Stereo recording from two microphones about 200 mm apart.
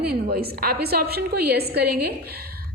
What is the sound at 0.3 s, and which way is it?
A woman's voice, 50° right (ahead or behind).